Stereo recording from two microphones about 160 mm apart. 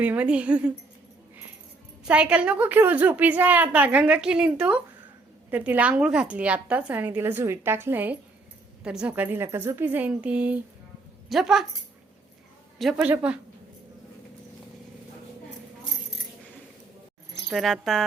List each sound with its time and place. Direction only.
0.0 s a woman's voice: 10° right (ahead or behind)
2.0 s a woman's voice: 10° right (ahead or behind)
12.8 s a woman's voice: 5° right (ahead or behind)
17.5 s speech: centre (ahead or behind)